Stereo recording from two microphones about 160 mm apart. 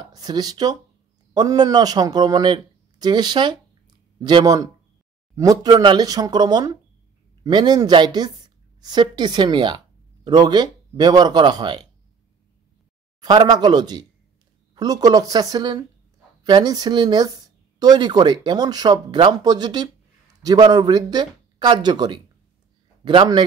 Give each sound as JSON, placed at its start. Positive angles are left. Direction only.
{"t": 0.0, "sound": "speech", "side_deg": -25}
{"t": 13.2, "sound": "speech", "side_deg": -25}